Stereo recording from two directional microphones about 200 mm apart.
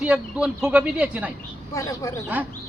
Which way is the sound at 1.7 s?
15° left (ahead or behind).